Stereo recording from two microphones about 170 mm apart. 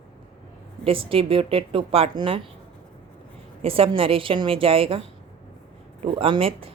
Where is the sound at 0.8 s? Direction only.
30° right (ahead or behind).